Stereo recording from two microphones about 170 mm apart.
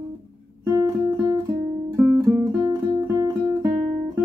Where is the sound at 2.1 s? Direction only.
20° right (ahead or behind).